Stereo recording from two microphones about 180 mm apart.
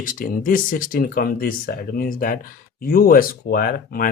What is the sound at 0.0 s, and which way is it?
Speech, 50° left (ahead or behind).